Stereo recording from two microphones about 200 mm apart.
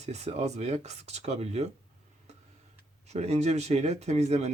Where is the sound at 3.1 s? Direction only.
35° right (ahead or behind).